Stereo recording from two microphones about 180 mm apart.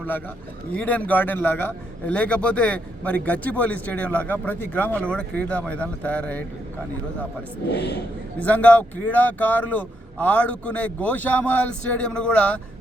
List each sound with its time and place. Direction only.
0.7 s a man's voice: 10° left (ahead or behind)
7.7 s speech: 65° left (ahead or behind)
8.4 s a man's voice: 10° left (ahead or behind)